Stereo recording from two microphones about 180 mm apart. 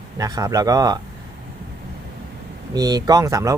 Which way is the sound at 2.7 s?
20° right (ahead or behind).